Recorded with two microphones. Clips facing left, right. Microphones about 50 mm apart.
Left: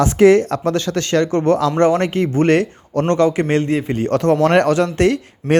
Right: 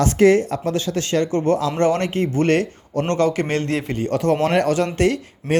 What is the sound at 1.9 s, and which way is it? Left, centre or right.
Speech, left.